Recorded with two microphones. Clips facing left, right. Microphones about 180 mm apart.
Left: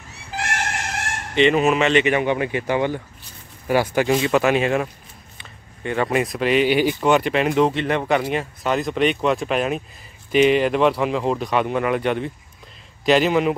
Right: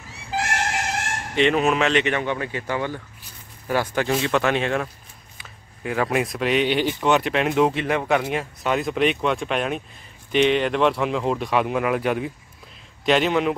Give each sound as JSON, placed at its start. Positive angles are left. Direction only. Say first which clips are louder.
{"t": 1.3, "sound": "speech", "louder": "left 3 dB", "side_deg": 0}
{"t": 2.1, "sound": "speech", "louder": "left 5 dB", "side_deg": 15}